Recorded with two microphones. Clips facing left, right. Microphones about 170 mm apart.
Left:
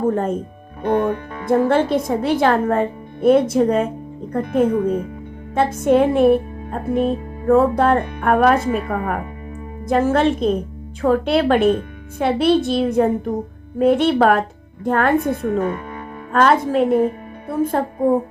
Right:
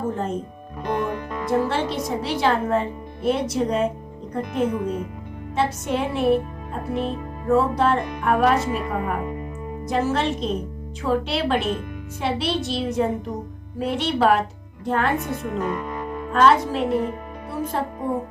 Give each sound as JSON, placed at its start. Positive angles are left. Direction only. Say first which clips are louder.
{"t": 0.0, "sound": "speech", "louder": "left 7 dB", "side_deg": 55}
{"t": 1.5, "sound": "speech", "louder": "left 7 dB", "side_deg": 55}